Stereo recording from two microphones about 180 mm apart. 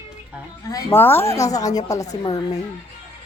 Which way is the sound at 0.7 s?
15° left (ahead or behind).